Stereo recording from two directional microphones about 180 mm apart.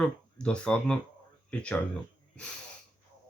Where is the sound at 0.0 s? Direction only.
5° left (ahead or behind).